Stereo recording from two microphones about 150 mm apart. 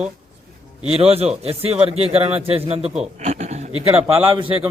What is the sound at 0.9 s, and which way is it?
A man's voice, 40° right (ahead or behind).